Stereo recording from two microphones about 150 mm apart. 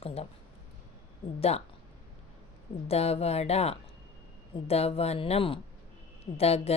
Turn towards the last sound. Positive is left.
turn(degrees=45)  # may be behind; listen again after turning